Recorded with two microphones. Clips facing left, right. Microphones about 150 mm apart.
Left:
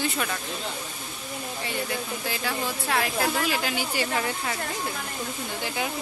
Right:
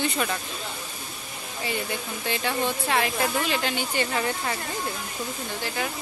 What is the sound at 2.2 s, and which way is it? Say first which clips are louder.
Speech: right 7 dB; centre (ahead or behind).